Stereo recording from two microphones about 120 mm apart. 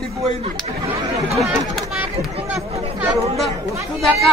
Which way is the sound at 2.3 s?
55° right (ahead or behind).